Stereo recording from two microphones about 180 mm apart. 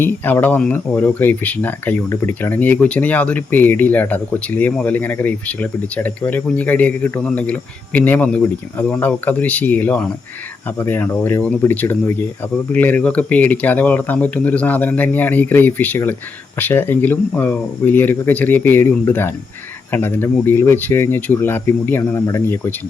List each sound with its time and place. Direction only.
0.0 s speech: 10° left (ahead or behind)